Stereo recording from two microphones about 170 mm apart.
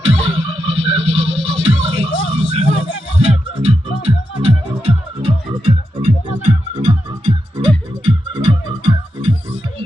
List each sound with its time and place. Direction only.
0.0 s music: 30° right (ahead or behind)
7.3 s music: 35° right (ahead or behind)